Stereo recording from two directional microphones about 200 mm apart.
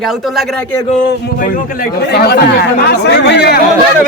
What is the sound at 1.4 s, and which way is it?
Speech, 45° left (ahead or behind).